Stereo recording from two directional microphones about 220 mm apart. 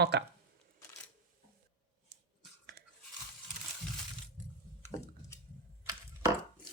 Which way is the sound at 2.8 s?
45° right (ahead or behind).